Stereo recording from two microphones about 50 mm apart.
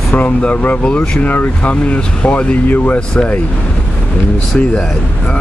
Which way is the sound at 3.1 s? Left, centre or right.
Centre.